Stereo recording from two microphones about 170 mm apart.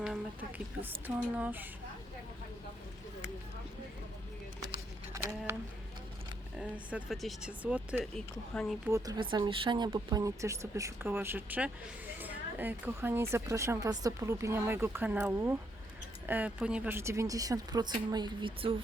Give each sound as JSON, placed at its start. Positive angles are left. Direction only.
{"t": 0.8, "sound": "speech", "side_deg": -10}
{"t": 4.7, "sound": "a sound", "side_deg": -15}
{"t": 6.6, "sound": "speech", "side_deg": 0}
{"t": 8.1, "sound": "speech", "side_deg": 5}
{"t": 8.9, "sound": "a woman's voice", "side_deg": -20}